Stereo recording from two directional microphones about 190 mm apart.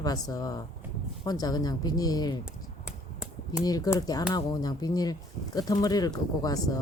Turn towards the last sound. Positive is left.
turn(degrees=20)  # may be behind; listen again after turning